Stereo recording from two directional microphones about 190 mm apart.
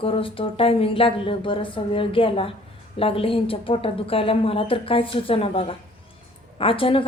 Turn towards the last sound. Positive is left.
turn(degrees=30)  # may be behind; listen again after turning